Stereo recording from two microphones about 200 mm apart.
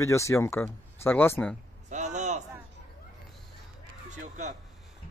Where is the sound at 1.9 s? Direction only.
35° right (ahead or behind).